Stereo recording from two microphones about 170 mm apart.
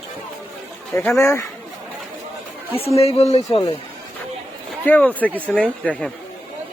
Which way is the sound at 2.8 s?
35° left (ahead or behind).